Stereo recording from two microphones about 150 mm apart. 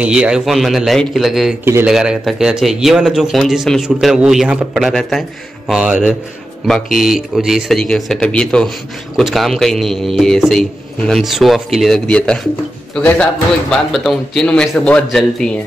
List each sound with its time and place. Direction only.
0.0 s speech: 5° right (ahead or behind)
1.6 s speech: 15° right (ahead or behind)
1.9 s speech: 5° right (ahead or behind)